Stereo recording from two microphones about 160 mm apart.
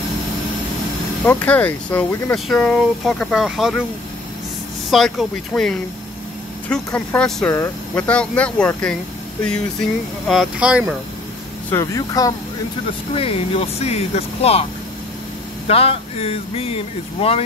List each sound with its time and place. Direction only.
1.2 s speech: 10° left (ahead or behind)
4.9 s speech: centre (ahead or behind)
7.4 s speech: 20° left (ahead or behind)
7.9 s speech: 10° left (ahead or behind)
11.7 s speech: 20° left (ahead or behind)
13.1 s speech: 35° left (ahead or behind)